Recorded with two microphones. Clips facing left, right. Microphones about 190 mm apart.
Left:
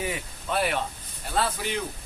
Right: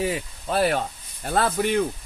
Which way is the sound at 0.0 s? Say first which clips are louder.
Right 5 dB; 35° right (ahead or behind).